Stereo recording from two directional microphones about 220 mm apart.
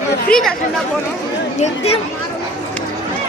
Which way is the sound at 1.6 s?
25° left (ahead or behind).